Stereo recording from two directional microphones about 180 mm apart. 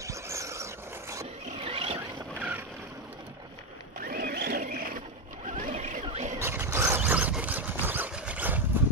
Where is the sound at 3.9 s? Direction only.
55° right (ahead or behind); by 6.3 s 35° right (ahead or behind).